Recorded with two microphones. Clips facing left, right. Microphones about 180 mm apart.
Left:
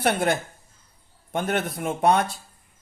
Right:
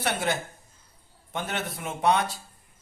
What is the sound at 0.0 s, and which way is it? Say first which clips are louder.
A man's voice: left 5 dB; 55° left (ahead or behind).